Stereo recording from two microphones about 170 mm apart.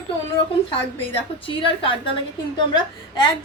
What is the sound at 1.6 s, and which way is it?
Speech, 30° left (ahead or behind).